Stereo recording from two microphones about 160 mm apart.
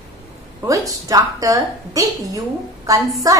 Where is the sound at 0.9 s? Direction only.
20° right (ahead or behind).